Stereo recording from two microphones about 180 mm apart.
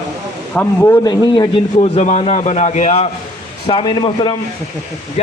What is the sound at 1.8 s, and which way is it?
A man's voice, 35° left (ahead or behind).